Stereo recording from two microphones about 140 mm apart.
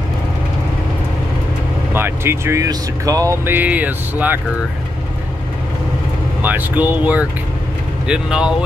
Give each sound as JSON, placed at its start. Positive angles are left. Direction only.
{"t": 2.0, "sound": "speech", "side_deg": -15}
{"t": 6.4, "sound": "speech", "side_deg": -10}